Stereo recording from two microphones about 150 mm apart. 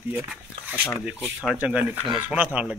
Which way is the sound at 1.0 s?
5° right (ahead or behind).